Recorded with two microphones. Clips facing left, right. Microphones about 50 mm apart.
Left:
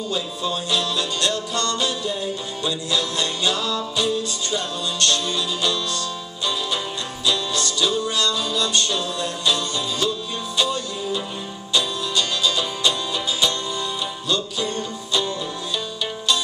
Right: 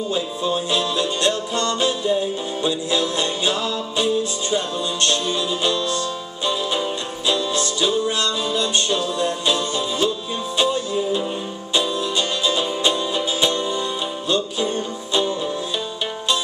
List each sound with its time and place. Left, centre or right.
0.1 s music: right
7.2 s music: right